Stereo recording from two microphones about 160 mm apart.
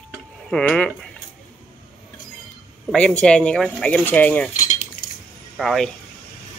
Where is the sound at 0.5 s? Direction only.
5° left (ahead or behind).